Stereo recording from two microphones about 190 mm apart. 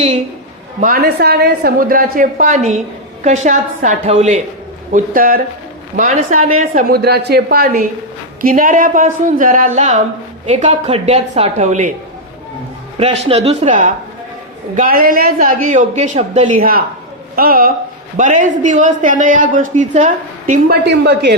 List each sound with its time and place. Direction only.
0.8 s a man's voice: 50° right (ahead or behind)
13.0 s a woman's voice: 35° right (ahead or behind)
20.8 s speech: 65° right (ahead or behind)